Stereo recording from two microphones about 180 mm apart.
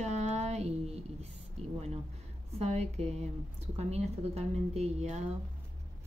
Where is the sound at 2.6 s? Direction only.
35° right (ahead or behind).